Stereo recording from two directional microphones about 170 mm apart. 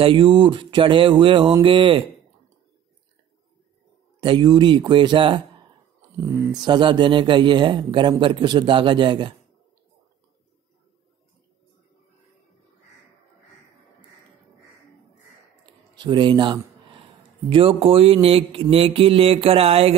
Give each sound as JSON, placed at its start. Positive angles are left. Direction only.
{"t": 0.0, "sound": "speech", "side_deg": -30}
{"t": 4.2, "sound": "speech", "side_deg": -25}
{"t": 5.9, "sound": "speech", "side_deg": -15}
{"t": 15.6, "sound": "a sound", "side_deg": -30}
{"t": 17.5, "sound": "mantra", "side_deg": -30}